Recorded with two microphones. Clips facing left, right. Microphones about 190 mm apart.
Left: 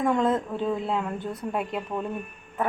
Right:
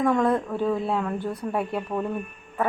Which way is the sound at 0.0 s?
20° left (ahead or behind).